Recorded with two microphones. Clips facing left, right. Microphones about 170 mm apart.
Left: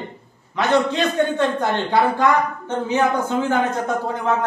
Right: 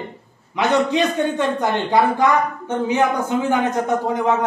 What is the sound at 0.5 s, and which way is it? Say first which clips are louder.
A man's voice: right 1 dB; 15° right (ahead or behind).